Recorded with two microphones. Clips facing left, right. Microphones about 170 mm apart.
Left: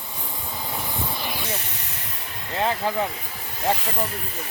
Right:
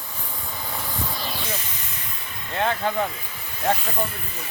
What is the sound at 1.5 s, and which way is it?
Hiss, 70° left (ahead or behind).